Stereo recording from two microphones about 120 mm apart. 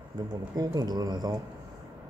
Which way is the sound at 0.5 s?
35° right (ahead or behind).